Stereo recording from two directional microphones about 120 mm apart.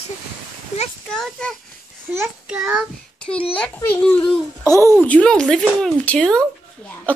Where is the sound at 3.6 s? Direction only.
10° left (ahead or behind).